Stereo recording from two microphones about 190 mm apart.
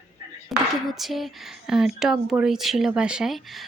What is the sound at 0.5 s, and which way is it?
Speech, centre (ahead or behind).